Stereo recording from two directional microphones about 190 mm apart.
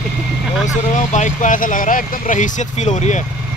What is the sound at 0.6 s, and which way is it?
Speech, 40° left (ahead or behind).